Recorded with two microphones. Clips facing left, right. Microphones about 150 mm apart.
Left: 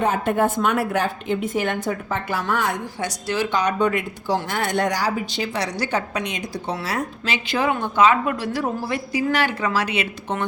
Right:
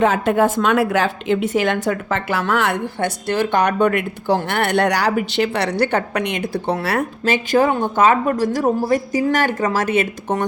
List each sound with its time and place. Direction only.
0.0 s a woman's voice: 90° right; by 10.4 s 45° right (ahead or behind)